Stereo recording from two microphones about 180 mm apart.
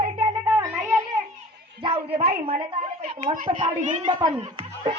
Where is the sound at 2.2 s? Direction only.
30° right (ahead or behind).